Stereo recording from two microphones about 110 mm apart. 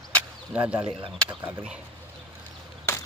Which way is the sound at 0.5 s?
10° right (ahead or behind).